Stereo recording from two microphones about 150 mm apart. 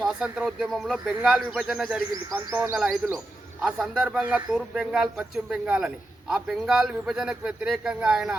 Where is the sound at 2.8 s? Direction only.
Centre (ahead or behind).